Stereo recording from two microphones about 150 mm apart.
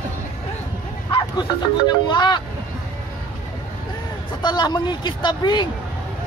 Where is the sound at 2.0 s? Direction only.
30° left (ahead or behind).